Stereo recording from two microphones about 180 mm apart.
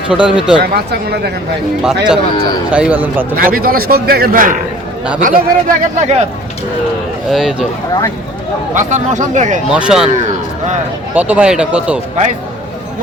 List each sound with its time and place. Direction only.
0.1 s speech: 5° right (ahead or behind)
0.6 s a man's voice: 60° right (ahead or behind)
1.8 s speech: 5° right (ahead or behind)
3.3 s a man's voice: 55° right (ahead or behind)
7.3 s speech: centre (ahead or behind)
8.7 s speech: 45° right (ahead or behind)
9.6 s speech: 5° right (ahead or behind)
11.1 s speech: 10° right (ahead or behind)